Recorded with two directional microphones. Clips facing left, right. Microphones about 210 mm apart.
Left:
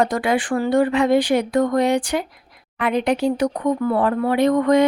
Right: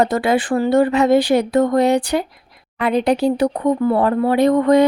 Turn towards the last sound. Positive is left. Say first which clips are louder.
# right 3 dB
turn(degrees=-35)  # may be behind; listen again after turning